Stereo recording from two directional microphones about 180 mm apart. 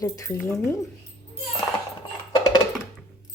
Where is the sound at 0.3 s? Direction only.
Centre (ahead or behind).